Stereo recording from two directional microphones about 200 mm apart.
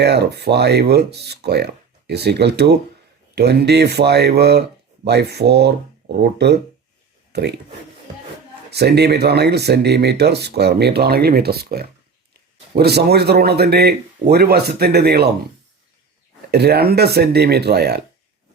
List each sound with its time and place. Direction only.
0.0 s speech: 55° right (ahead or behind)
8.7 s speech: 55° right (ahead or behind)
16.5 s speech: 55° right (ahead or behind)